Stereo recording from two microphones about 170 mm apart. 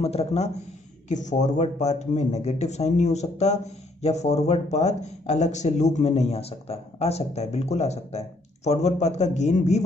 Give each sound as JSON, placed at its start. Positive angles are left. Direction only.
{"t": 0.0, "sound": "a man's voice", "side_deg": 35}